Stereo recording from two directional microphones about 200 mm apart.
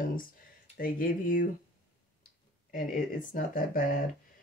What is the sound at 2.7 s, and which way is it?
Speech, 45° left (ahead or behind).